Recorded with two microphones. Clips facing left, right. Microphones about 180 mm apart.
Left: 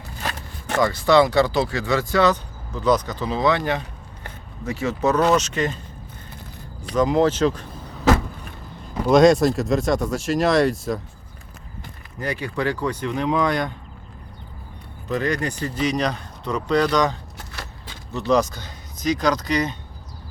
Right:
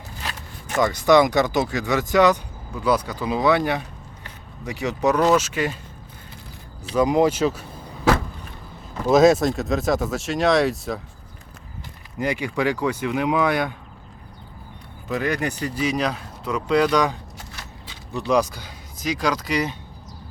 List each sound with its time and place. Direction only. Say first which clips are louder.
0.2 s zipper: left 4 dB; 50° left (ahead or behind)
0.8 s speech: even; 15° right (ahead or behind)
6.9 s speech: even; 10° right (ahead or behind)
9.0 s speech: left 1 dB; 5° right (ahead or behind)
12.2 s speech: right 2 dB; 15° right (ahead or behind)
15.1 s speech: left 1 dB; 5° right (ahead or behind)
17.3 s a sound: left 2 dB; 55° left (ahead or behind)
18.1 s speech: left 1 dB; 10° right (ahead or behind)